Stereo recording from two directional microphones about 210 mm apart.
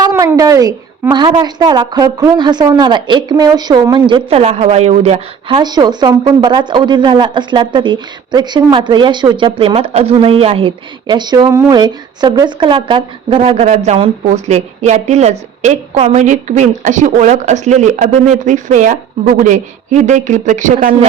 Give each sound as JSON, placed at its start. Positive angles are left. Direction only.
{"t": 0.0, "sound": "a woman's voice", "side_deg": -15}